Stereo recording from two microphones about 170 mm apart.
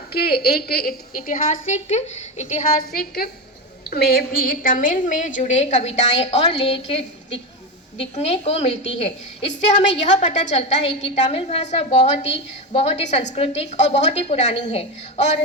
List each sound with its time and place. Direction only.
0.1 s a woman's voice: 65° left (ahead or behind); by 2.6 s 45° left (ahead or behind)
2.9 s a woman's voice: 60° left (ahead or behind); by 15.4 s 40° left (ahead or behind)